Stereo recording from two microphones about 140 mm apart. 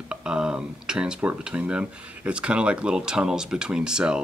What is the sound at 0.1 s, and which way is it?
Speech, 5° right (ahead or behind).